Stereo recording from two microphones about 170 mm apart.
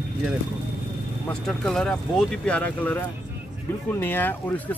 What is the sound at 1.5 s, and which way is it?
Speech, 5° left (ahead or behind).